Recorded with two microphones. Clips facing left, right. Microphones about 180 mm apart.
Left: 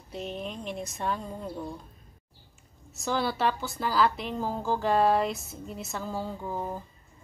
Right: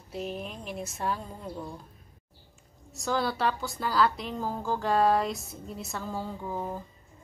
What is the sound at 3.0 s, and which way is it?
A woman's voice, 5° left (ahead or behind).